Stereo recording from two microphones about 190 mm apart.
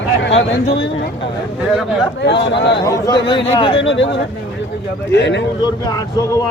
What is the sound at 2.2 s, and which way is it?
Speech, 65° left (ahead or behind).